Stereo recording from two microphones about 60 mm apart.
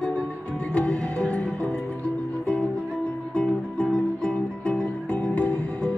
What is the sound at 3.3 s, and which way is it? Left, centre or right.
Music, left.